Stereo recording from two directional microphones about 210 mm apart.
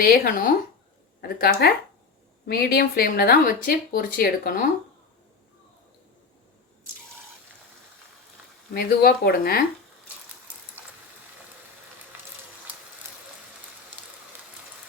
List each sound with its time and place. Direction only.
0.0 s speech: 45° left (ahead or behind)
8.7 s speech: 45° left (ahead or behind)